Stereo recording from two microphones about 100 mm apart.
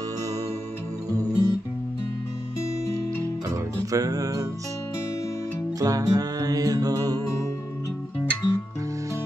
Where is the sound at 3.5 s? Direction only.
35° right (ahead or behind).